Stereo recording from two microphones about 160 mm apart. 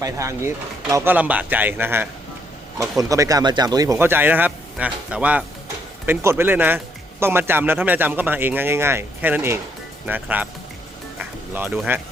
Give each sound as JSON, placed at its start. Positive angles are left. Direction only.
{"t": 0.0, "sound": "a man's voice", "side_deg": -20}
{"t": 11.2, "sound": "music", "side_deg": -10}